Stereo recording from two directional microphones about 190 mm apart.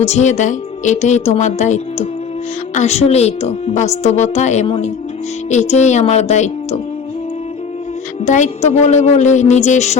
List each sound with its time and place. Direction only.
0.0 s a woman's voice: 35° left (ahead or behind)
8.2 s a woman's voice: 40° left (ahead or behind)